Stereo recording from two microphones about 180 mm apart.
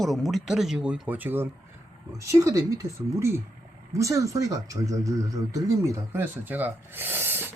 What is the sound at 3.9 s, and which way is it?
Speech, 15° right (ahead or behind).